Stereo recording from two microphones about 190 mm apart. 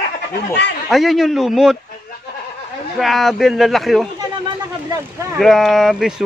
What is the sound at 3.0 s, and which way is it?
Speech, centre (ahead or behind).